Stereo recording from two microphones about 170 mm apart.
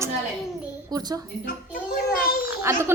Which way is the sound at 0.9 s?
25° right (ahead or behind).